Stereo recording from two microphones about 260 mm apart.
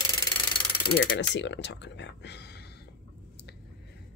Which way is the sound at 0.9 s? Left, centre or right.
Left.